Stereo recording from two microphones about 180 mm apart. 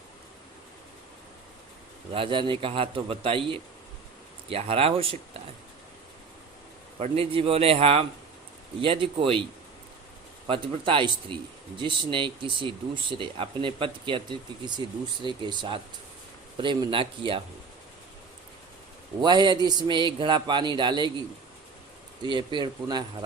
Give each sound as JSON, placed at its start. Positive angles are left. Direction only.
{"t": 2.1, "sound": "a man's voice", "side_deg": -30}
{"t": 7.0, "sound": "a man's voice", "side_deg": -30}
{"t": 10.4, "sound": "speech", "side_deg": -30}
{"t": 19.2, "sound": "speech", "side_deg": -25}
{"t": 22.2, "sound": "speech", "side_deg": -25}